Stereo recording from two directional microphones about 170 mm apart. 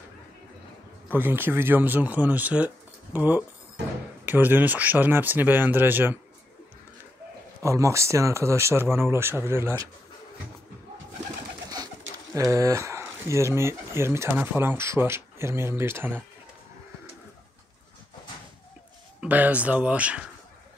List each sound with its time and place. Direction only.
1.0 s speech: 10° right (ahead or behind)
7.6 s speech: 15° right (ahead or behind)
12.4 s speech: 20° right (ahead or behind)
19.2 s speech: 10° right (ahead or behind)